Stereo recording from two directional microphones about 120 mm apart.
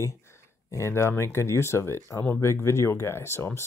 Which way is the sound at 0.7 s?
25° left (ahead or behind).